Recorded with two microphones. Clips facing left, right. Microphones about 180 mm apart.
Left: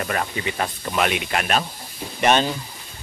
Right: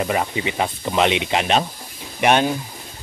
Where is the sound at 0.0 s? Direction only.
15° right (ahead or behind).